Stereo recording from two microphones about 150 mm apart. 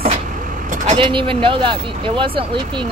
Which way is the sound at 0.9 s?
35° right (ahead or behind).